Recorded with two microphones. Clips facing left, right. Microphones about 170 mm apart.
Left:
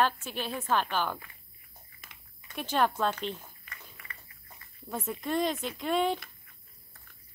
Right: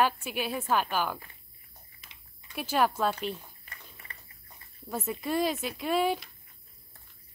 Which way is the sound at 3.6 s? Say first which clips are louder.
Even; 35° right (ahead or behind).